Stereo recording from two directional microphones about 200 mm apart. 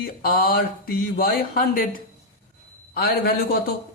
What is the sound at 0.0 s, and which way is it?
Speech, 45° left (ahead or behind).